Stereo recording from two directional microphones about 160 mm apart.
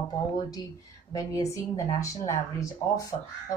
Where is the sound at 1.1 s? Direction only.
20° left (ahead or behind).